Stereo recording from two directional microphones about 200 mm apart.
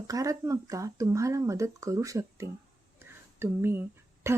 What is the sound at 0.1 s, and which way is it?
A woman's voice, 15° right (ahead or behind).